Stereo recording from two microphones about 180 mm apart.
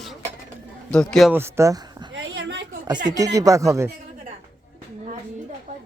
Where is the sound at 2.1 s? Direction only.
90° right.